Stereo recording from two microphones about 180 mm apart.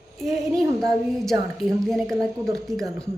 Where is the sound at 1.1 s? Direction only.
Centre (ahead or behind).